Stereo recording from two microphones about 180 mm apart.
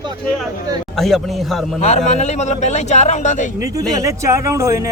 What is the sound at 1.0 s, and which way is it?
Speech, centre (ahead or behind).